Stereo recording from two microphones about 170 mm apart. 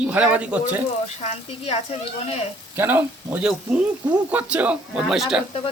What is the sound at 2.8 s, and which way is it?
Speech, 10° right (ahead or behind).